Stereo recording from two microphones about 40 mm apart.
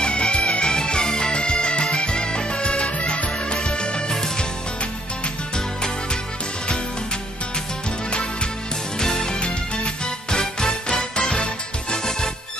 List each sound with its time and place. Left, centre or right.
0.0 s music: left
8.1 s music: left
9.0 s music: centre
9.4 s music: left